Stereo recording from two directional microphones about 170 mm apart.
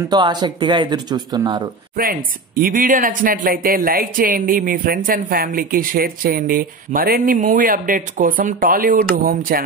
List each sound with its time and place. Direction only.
0.1 s speech: 25° right (ahead or behind)
2.0 s speech: 55° right (ahead or behind)